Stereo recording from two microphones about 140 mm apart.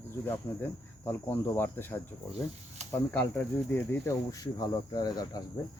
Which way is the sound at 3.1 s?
15° left (ahead or behind).